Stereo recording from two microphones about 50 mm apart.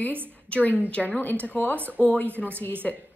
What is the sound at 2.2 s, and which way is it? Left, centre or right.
Speech, right.